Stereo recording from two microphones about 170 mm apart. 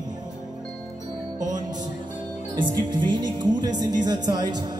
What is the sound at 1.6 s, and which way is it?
Music, 25° right (ahead or behind).